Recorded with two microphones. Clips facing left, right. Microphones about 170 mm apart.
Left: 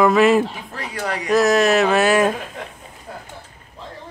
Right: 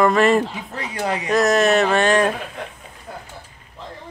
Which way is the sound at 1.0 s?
20° right (ahead or behind).